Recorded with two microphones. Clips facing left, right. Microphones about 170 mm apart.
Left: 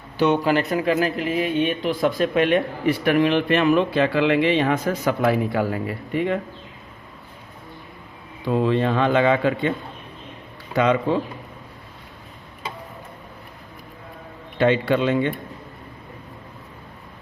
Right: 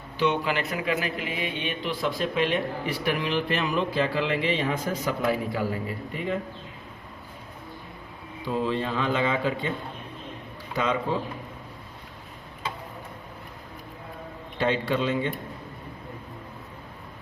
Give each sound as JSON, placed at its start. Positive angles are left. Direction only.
{"t": 0.2, "sound": "speech", "side_deg": 40}
{"t": 8.4, "sound": "speech", "side_deg": 65}
{"t": 10.8, "sound": "speech", "side_deg": 65}
{"t": 14.6, "sound": "speech", "side_deg": 65}